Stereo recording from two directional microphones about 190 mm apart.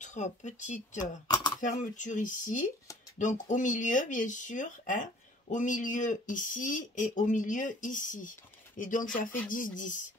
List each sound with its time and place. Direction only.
0.0 s speech: 40° left (ahead or behind)
1.2 s a sound: 20° left (ahead or behind)
1.6 s speech: 40° left (ahead or behind)